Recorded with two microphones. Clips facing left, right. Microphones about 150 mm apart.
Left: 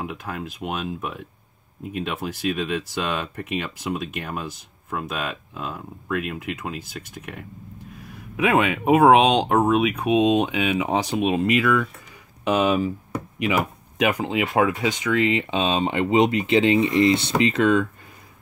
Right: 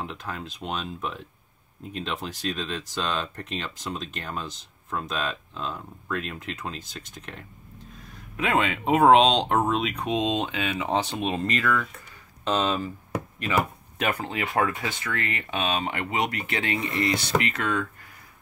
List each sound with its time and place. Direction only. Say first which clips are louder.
0.0 s speech: left 4 dB; 10° left (ahead or behind)